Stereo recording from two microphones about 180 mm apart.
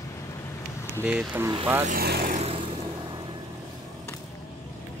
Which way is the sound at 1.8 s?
60° right (ahead or behind).